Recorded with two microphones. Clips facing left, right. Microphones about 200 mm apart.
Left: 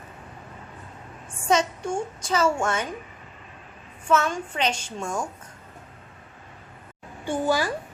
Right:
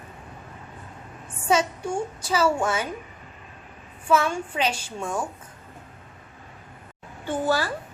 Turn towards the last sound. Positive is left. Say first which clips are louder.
# even
turn(degrees=15)  # may be behind; listen again after turning